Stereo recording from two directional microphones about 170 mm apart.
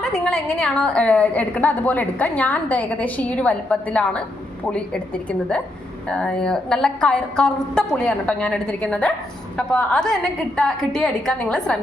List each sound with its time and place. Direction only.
0.0 s a woman's voice: 5° left (ahead or behind)